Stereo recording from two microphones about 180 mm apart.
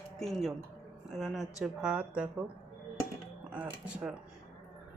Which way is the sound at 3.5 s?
5° right (ahead or behind).